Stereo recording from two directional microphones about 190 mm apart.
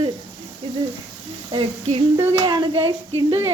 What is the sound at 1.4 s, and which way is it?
A woman's voice, 25° right (ahead or behind).